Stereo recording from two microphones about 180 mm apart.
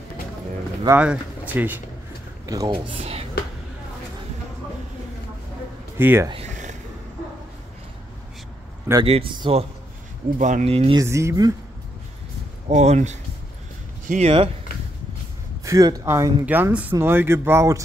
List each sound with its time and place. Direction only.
0.8 s speech: 5° right (ahead or behind)
2.4 s speech: 20° right (ahead or behind)
5.9 s speech: 15° right (ahead or behind)
6.3 s a sound: 40° right (ahead or behind)
9.0 s speech: 35° right (ahead or behind)
11.0 s speech: 15° right (ahead or behind)
12.6 s speech: 40° right (ahead or behind)
15.6 s speech: 20° right (ahead or behind)